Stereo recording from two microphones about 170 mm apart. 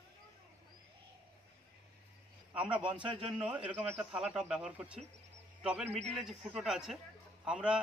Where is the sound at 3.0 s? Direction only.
30° right (ahead or behind).